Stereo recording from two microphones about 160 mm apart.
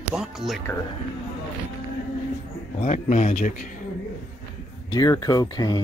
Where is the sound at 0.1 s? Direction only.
Centre (ahead or behind).